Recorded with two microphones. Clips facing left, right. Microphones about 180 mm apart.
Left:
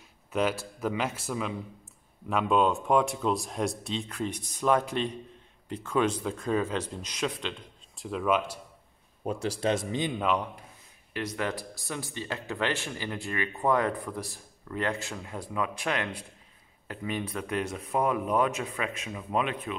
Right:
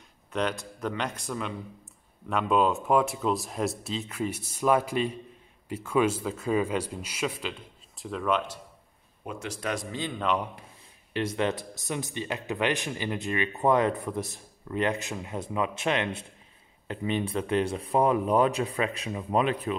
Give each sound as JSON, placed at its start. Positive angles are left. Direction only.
{"t": 0.3, "sound": "speech", "side_deg": 5}
{"t": 9.2, "sound": "a man's voice", "side_deg": 35}
{"t": 11.1, "sound": "speech", "side_deg": -25}